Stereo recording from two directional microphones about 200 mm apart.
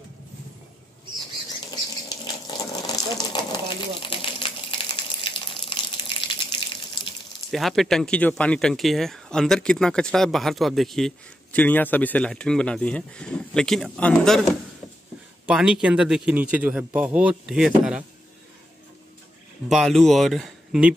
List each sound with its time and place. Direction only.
2.0 s sewing machine: 20° left (ahead or behind)
7.5 s speech: centre (ahead or behind)
15.4 s speech: 5° right (ahead or behind)
19.7 s speech: centre (ahead or behind)